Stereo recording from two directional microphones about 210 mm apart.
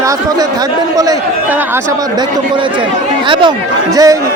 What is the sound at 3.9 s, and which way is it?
Speech, 15° right (ahead or behind).